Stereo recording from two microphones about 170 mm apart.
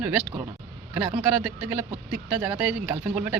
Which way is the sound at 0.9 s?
5° right (ahead or behind).